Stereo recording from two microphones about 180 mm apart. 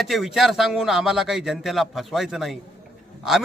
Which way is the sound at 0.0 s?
Centre (ahead or behind).